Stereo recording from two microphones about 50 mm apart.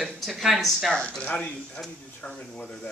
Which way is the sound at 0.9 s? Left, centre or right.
Centre.